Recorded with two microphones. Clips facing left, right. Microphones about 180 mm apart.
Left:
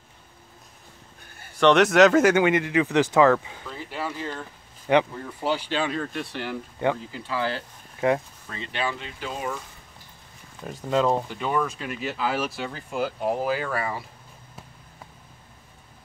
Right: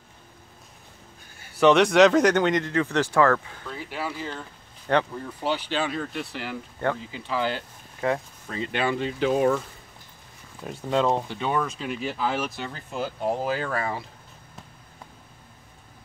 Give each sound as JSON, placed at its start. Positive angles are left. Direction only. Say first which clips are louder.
{"t": 1.5, "sound": "speech", "louder": "even", "side_deg": -5}
{"t": 3.6, "sound": "speech", "louder": "even", "side_deg": 0}
{"t": 6.8, "sound": "speech", "louder": "left 2 dB", "side_deg": 15}
{"t": 8.0, "sound": "speech", "louder": "left 3 dB", "side_deg": 15}
{"t": 8.7, "sound": "speech", "louder": "right 4 dB", "side_deg": -60}
{"t": 10.9, "sound": "speech", "louder": "left 1 dB", "side_deg": 0}